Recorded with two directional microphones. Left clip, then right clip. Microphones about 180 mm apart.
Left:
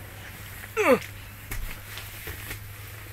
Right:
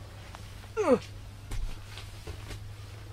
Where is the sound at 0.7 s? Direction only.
5° right (ahead or behind).